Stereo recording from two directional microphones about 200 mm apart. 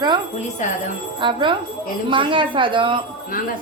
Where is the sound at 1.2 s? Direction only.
25° right (ahead or behind).